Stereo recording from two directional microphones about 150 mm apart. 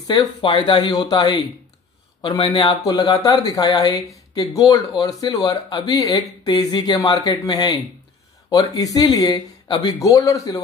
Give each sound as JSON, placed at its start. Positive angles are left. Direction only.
{"t": 0.4, "sound": "speech", "side_deg": 35}